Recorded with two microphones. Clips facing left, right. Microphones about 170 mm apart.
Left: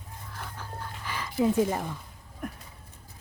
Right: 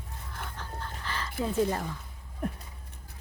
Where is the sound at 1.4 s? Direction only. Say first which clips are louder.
Left 4 dB; 10° left (ahead or behind).